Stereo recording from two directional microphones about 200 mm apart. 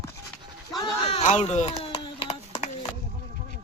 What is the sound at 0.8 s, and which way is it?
Speech, 30° left (ahead or behind).